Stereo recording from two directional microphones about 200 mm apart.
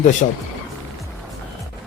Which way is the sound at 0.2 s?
40° left (ahead or behind).